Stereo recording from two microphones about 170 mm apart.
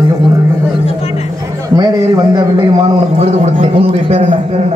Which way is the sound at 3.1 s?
35° right (ahead or behind).